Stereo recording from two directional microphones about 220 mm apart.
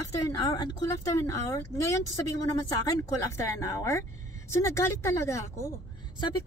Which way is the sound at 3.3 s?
15° left (ahead or behind).